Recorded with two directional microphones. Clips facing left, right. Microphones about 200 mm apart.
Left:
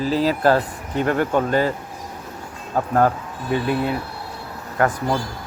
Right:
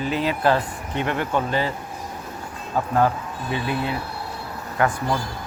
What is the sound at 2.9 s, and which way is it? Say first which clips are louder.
Speech: left 2 dB; 50° left (ahead or behind).